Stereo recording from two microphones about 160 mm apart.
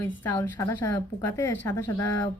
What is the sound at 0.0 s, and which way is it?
Speech, 10° left (ahead or behind).